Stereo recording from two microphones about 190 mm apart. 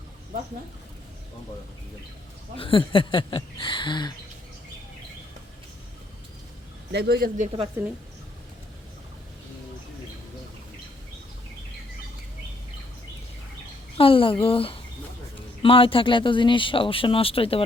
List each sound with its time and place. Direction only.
2.6 s speech: 25° left (ahead or behind)
6.9 s a man's voice: 55° right (ahead or behind)
7.8 s speech: 10° right (ahead or behind)
13.9 s speech: 30° left (ahead or behind)